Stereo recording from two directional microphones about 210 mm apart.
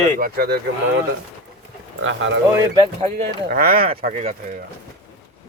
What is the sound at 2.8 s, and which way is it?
Speech, 25° right (ahead or behind).